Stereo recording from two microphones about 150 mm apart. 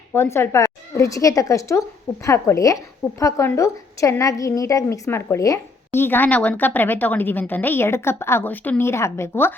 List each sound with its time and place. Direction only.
0.1 s a woman's voice: 15° left (ahead or behind)